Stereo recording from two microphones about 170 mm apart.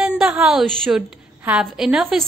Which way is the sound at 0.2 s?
Centre (ahead or behind).